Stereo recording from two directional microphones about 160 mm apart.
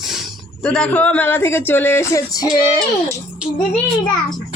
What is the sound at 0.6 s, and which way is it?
Speech, 5° left (ahead or behind).